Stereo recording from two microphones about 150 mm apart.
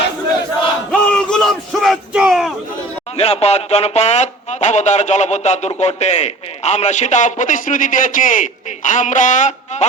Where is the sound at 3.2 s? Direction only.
45° left (ahead or behind).